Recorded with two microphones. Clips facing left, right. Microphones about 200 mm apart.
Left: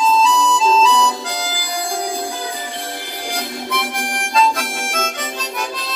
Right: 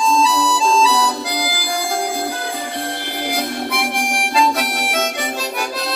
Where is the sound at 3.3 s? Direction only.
10° right (ahead or behind).